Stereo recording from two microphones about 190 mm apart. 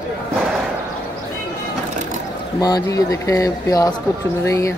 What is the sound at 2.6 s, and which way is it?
Speech, 20° left (ahead or behind).